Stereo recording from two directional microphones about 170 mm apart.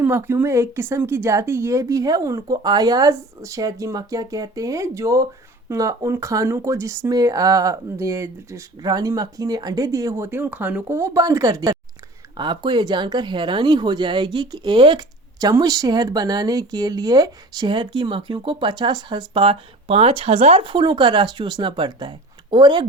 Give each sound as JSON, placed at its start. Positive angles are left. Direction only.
{"t": 0.0, "sound": "speech", "side_deg": -15}